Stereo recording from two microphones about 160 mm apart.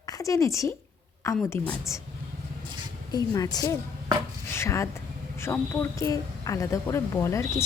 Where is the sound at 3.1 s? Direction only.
25° left (ahead or behind).